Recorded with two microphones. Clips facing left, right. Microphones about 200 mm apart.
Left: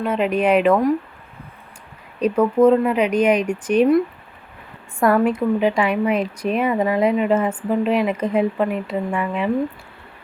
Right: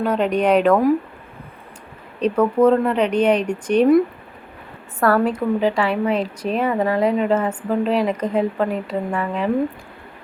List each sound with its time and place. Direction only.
0.0 s a woman's voice: 5° left (ahead or behind)
2.2 s a woman's voice: 10° left (ahead or behind)
4.9 s a woman's voice: 15° left (ahead or behind)